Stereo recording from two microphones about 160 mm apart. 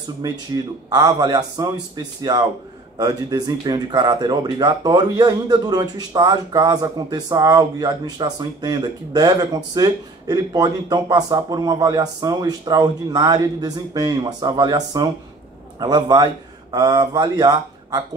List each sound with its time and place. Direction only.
0.8 s speech: 25° right (ahead or behind)
3.0 s speech: 25° right (ahead or behind)